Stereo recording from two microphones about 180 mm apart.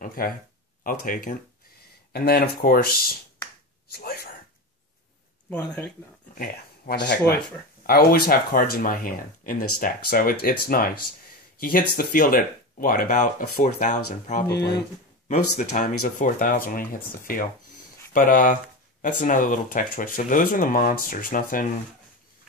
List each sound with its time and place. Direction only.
0.0 s speech: 50° left (ahead or behind)
5.5 s speech: 5° left (ahead or behind)
6.3 s speech: 55° left (ahead or behind)
7.8 s speech: 55° left (ahead or behind)